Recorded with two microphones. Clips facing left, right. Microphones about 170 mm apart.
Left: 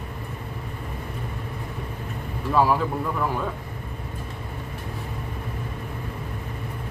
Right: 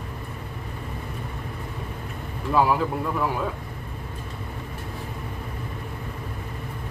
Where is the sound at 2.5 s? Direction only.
Centre (ahead or behind).